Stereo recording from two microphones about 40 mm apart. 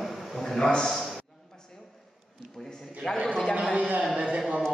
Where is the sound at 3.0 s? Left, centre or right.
Centre.